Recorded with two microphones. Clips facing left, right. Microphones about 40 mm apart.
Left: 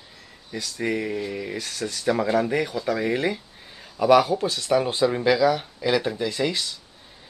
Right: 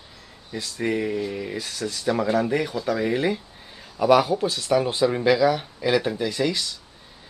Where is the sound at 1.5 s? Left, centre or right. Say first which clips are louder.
Right 1 dB; centre.